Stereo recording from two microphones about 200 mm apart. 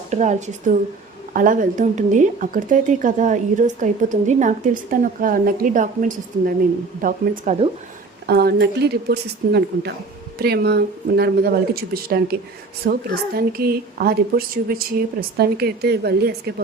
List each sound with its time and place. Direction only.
0.1 s speech: 35° right (ahead or behind)
8.3 s a woman's voice: 55° right (ahead or behind)